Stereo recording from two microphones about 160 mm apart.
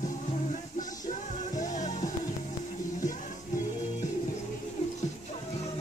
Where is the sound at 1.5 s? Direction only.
50° left (ahead or behind).